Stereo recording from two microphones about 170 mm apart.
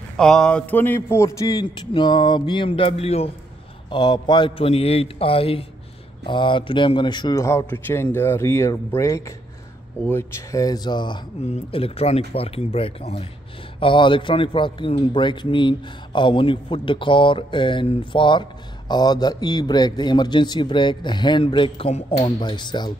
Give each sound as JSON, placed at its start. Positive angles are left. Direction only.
{"t": 0.2, "sound": "a man's voice", "side_deg": 5}
{"t": 3.9, "sound": "a man's voice", "side_deg": 25}
{"t": 22.4, "sound": "a man's voice", "side_deg": 25}